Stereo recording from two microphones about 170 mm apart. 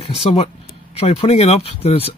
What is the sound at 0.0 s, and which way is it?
Speech, 35° left (ahead or behind).